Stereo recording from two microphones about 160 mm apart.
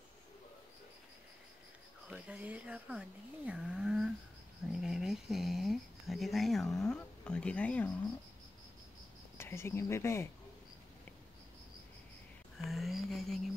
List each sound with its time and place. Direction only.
2.0 s speech: 5° right (ahead or behind)
9.4 s speech: 15° left (ahead or behind)
12.5 s a sound: centre (ahead or behind)